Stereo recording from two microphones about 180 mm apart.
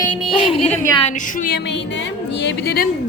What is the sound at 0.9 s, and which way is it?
A woman's voice, 40° left (ahead or behind).